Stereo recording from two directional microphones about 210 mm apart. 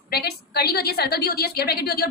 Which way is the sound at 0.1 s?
50° left (ahead or behind).